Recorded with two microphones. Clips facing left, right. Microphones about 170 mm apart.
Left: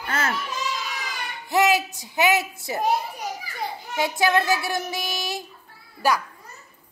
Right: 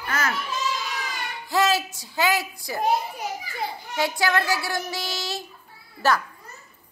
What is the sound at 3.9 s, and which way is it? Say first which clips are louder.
Child singing: left 2 dB; 20° left (ahead or behind).